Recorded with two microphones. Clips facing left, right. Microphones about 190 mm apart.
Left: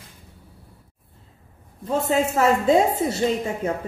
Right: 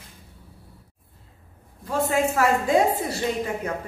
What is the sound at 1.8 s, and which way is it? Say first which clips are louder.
A woman's voice: left 1 dB; 20° left (ahead or behind).